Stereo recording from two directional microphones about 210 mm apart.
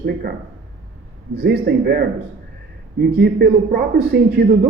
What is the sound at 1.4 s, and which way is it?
Speech, 50° right (ahead or behind).